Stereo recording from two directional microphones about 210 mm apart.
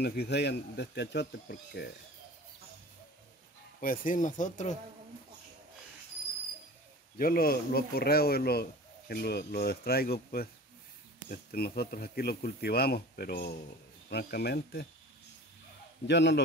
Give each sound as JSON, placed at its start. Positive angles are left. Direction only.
{"t": 0.0, "sound": "speech", "side_deg": 50}
{"t": 3.8, "sound": "speech", "side_deg": 40}
{"t": 7.2, "sound": "speech", "side_deg": 45}
{"t": 16.1, "sound": "a man's voice", "side_deg": 55}